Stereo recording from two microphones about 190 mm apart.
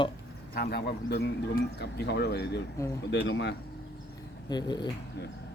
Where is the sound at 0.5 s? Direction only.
60° left (ahead or behind).